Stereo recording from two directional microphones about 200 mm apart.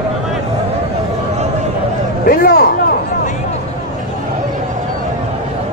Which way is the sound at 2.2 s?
50° left (ahead or behind).